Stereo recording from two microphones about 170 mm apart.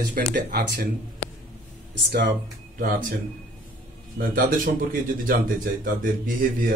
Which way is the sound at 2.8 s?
55° right (ahead or behind).